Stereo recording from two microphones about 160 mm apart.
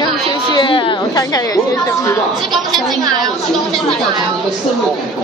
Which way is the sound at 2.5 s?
Centre (ahead or behind).